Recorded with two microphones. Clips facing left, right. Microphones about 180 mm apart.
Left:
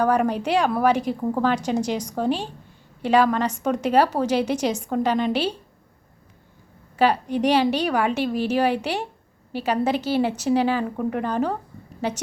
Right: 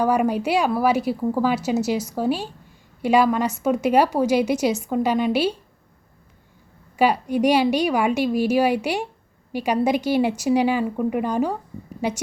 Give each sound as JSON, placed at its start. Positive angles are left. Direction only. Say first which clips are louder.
{"t": 0.0, "sound": "a woman's voice", "louder": "right 1 dB", "side_deg": -10}
{"t": 6.9, "sound": "a woman's voice", "louder": "right 1 dB", "side_deg": -10}